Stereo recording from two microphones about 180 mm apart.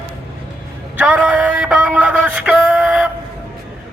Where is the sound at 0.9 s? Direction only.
5° right (ahead or behind).